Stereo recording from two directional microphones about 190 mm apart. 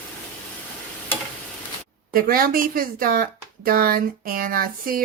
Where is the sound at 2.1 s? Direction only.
50° right (ahead or behind).